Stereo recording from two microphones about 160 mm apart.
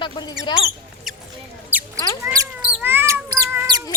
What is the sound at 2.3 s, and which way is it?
Mouse, 15° right (ahead or behind).